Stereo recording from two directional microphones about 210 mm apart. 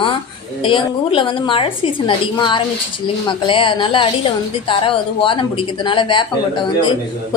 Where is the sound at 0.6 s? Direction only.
25° left (ahead or behind).